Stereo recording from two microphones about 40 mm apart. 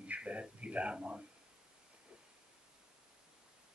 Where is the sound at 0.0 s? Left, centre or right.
Right.